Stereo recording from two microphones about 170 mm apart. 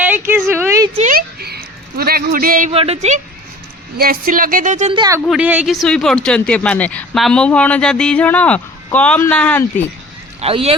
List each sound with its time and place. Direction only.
0.0 s a sound: 10° right (ahead or behind)
0.9 s speech: 45° right (ahead or behind)
1.4 s a sound: 70° right (ahead or behind)
2.7 s speech: 35° right (ahead or behind)
3.9 s speech: 60° right (ahead or behind)
4.9 s speech: 25° right (ahead or behind)
5.4 s speech: 10° right (ahead or behind); by 9.8 s 10° left (ahead or behind)
10.4 s speech: 35° right (ahead or behind)